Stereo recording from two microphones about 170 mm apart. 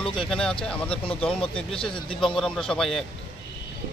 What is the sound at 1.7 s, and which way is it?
Speech, 30° left (ahead or behind).